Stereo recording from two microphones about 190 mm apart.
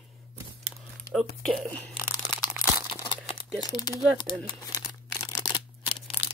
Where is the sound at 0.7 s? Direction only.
Centre (ahead or behind).